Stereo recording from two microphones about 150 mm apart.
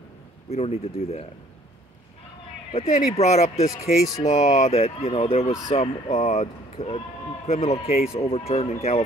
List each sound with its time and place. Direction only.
0.5 s speech: 45° left (ahead or behind)
2.7 s speech: 45° left (ahead or behind)
6.0 s speech: 55° left (ahead or behind)
6.4 s speech: 40° left (ahead or behind)